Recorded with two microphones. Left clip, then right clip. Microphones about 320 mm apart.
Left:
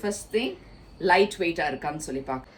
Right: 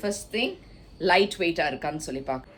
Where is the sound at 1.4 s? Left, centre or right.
Centre.